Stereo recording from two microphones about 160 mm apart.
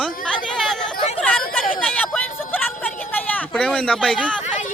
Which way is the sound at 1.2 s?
5° left (ahead or behind).